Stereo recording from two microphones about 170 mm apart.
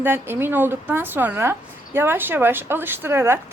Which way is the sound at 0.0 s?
15° right (ahead or behind).